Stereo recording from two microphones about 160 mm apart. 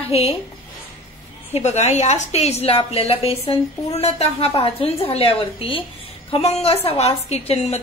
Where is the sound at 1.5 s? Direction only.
45° left (ahead or behind).